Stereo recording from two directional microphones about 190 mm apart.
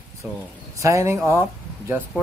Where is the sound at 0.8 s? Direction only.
15° right (ahead or behind).